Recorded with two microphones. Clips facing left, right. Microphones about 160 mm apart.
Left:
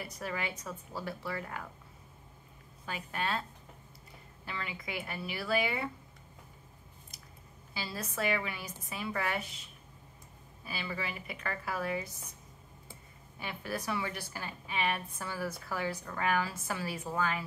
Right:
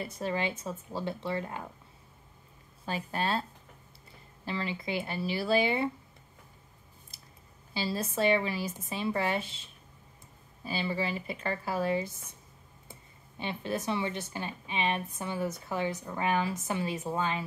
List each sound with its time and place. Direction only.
0.0 s a woman's voice: 25° right (ahead or behind)
2.8 s speech: 30° right (ahead or behind)
4.5 s a woman's voice: 30° right (ahead or behind)
7.7 s a woman's voice: 30° right (ahead or behind)
13.4 s a woman's voice: 25° right (ahead or behind)